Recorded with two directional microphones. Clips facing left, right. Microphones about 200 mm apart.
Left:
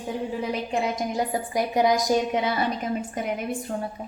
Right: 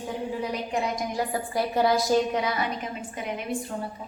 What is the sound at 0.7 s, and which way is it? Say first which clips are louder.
A woman's voice: left 2 dB; 20° left (ahead or behind).